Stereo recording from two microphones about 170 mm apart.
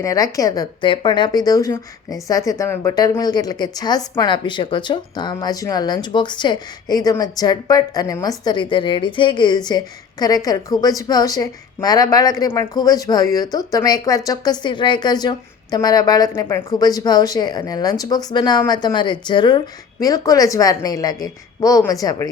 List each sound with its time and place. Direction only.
0.0 s a woman's voice: 20° left (ahead or behind)